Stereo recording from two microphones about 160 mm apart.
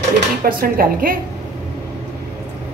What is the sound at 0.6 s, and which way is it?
Speech, 65° right (ahead or behind).